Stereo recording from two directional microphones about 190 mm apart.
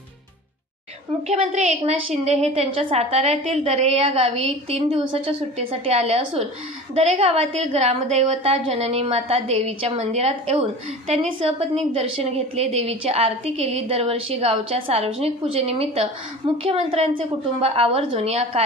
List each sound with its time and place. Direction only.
1.2 s a woman's voice: 35° right (ahead or behind)